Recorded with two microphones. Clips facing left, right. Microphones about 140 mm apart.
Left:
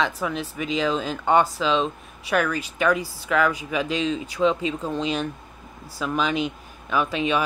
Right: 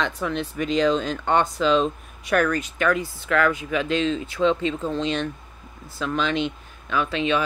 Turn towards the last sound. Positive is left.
turn(degrees=10)  # may be behind; listen again after turning